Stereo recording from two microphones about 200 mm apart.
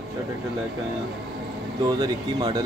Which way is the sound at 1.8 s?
20° right (ahead or behind).